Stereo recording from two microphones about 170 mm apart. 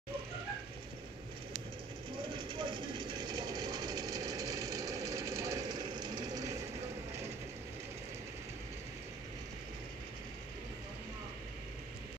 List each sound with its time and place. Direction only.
2.3 s sewing machine: 30° right (ahead or behind)